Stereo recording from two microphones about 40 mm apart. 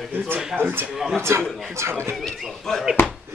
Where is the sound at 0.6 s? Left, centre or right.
Right.